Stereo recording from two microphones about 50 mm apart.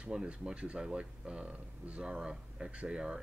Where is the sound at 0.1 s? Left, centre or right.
Centre.